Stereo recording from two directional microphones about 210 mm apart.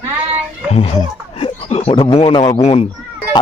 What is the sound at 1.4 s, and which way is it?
A man's voice, 25° left (ahead or behind).